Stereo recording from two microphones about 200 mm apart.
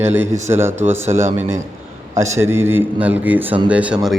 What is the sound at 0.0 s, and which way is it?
Speech, 10° right (ahead or behind).